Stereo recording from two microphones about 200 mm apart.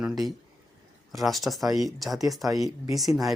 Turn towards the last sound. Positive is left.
turn(degrees=0)  # may be behind; listen again after turning